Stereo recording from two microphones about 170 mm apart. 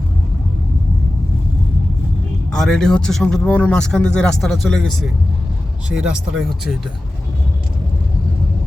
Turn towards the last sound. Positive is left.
turn(degrees=-5)  # may be behind; listen again after turning